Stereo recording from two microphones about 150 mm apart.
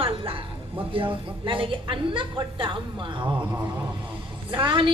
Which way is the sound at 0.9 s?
35° right (ahead or behind).